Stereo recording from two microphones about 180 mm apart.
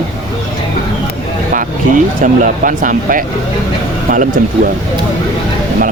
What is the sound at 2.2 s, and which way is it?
Speech, 45° right (ahead or behind).